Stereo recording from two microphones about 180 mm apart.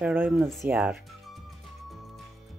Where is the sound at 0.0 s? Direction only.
10° right (ahead or behind).